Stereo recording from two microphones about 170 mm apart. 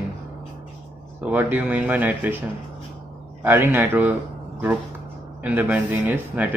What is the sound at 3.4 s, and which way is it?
Speech, 15° right (ahead or behind).